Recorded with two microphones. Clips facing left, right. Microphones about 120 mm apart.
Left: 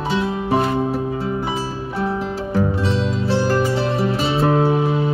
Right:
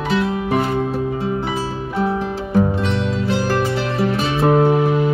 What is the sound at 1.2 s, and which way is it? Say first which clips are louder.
Music: right 1 dB; 25° right (ahead or behind).